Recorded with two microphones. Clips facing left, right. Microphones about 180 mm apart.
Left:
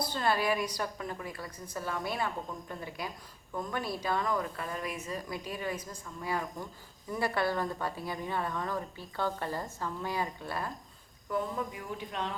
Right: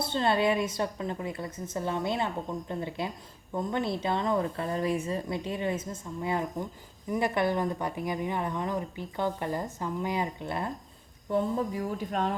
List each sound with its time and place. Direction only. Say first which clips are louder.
0.0 s a woman's voice: right 4 dB; 25° right (ahead or behind); by 12.3 s 45° right (ahead or behind)